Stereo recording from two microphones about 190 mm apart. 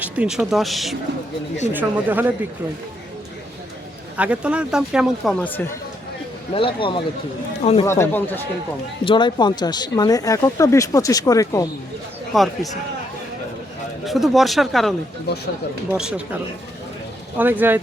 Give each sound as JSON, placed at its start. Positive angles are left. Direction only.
{"t": 0.0, "sound": "speech", "side_deg": -5}
{"t": 4.2, "sound": "speech", "side_deg": -5}
{"t": 6.5, "sound": "speech", "side_deg": 30}
{"t": 7.9, "sound": "speech", "side_deg": 15}
{"t": 9.0, "sound": "speech", "side_deg": 25}
{"t": 12.3, "sound": "speech", "side_deg": 0}
{"t": 14.0, "sound": "speech", "side_deg": 0}